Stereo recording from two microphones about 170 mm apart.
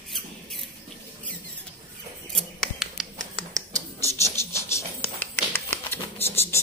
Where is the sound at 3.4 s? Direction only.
20° right (ahead or behind).